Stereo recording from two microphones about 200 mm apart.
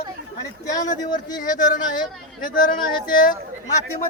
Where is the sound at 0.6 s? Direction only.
15° left (ahead or behind).